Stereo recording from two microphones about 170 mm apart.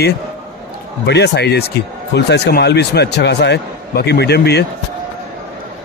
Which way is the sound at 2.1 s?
85° left.